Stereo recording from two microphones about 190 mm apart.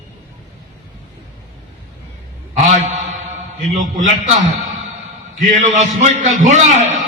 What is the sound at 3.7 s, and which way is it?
A man's voice, 40° right (ahead or behind).